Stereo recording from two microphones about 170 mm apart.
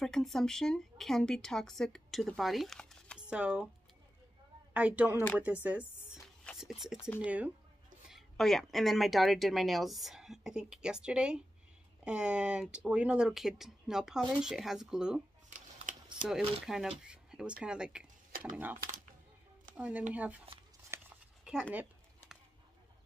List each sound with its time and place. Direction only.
0.0 s speech: centre (ahead or behind)
4.7 s speech: 10° right (ahead or behind)
5.1 s speech: 10° left (ahead or behind)
5.4 s speech: 10° right (ahead or behind)
15.5 s a sound: 45° right (ahead or behind)
16.3 s speech: 5° right (ahead or behind)
19.8 s speech: 10° right (ahead or behind)
20.9 s a sound: 10° right (ahead or behind)